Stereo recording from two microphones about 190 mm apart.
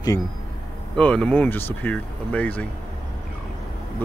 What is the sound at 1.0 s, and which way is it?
Speech, 5° left (ahead or behind).